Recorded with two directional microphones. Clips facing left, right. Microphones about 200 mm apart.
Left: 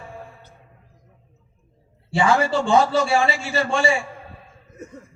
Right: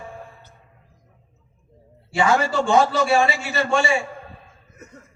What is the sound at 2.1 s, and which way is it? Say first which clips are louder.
A man's voice: even; 30° left (ahead or behind).